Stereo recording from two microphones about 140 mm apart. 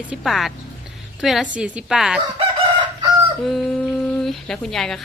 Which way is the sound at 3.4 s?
Centre (ahead or behind).